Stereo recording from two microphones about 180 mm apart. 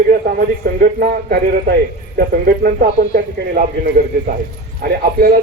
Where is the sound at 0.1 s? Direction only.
55° right (ahead or behind).